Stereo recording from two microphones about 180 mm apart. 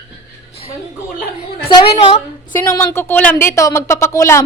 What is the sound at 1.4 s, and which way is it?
Speech, 35° left (ahead or behind).